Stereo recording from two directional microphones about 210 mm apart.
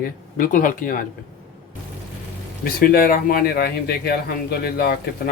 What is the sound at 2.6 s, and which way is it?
Speech, 45° left (ahead or behind).